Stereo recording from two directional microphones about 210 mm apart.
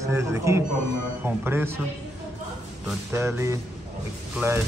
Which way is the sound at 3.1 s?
15° right (ahead or behind).